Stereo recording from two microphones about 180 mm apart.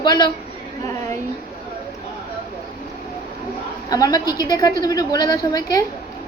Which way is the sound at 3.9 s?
20° left (ahead or behind).